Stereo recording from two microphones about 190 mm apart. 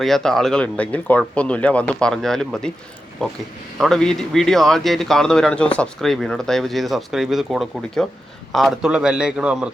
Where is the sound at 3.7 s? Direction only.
Centre (ahead or behind).